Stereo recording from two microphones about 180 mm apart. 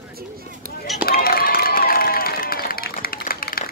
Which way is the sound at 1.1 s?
55° left (ahead or behind).